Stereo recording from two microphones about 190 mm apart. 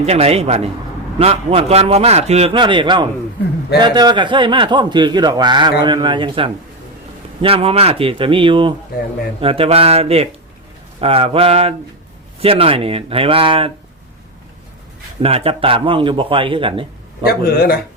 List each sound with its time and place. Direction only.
0.0 s a man's voice: 35° right (ahead or behind)
15.2 s a man's voice: 30° right (ahead or behind)
17.2 s speech: 50° left (ahead or behind)